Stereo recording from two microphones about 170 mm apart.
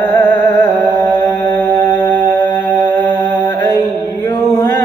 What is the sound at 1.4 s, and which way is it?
Mantra, 25° left (ahead or behind).